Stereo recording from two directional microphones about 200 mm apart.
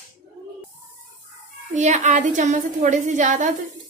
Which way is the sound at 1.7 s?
35° right (ahead or behind).